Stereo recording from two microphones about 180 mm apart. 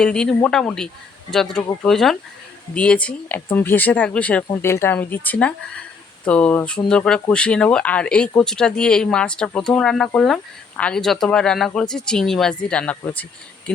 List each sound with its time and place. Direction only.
0.0 s speech: 5° left (ahead or behind)
4.4 s speech: 20° left (ahead or behind)